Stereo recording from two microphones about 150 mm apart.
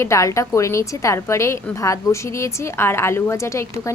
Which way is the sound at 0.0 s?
20° left (ahead or behind).